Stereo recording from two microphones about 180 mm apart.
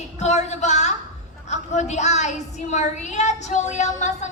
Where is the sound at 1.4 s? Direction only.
40° left (ahead or behind).